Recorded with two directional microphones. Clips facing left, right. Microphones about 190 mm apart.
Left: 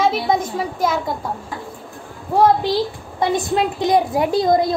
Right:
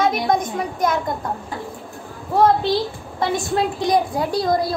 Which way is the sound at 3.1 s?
20° left (ahead or behind).